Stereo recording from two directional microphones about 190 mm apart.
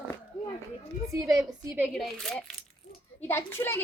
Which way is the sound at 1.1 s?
20° right (ahead or behind).